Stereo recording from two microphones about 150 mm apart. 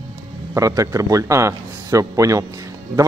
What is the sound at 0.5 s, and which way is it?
A man's voice, 20° right (ahead or behind).